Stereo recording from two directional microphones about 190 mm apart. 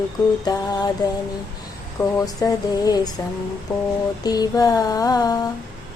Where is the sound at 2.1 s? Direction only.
20° left (ahead or behind).